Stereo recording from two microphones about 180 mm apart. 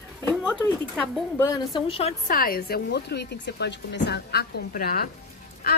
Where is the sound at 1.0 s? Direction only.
15° left (ahead or behind).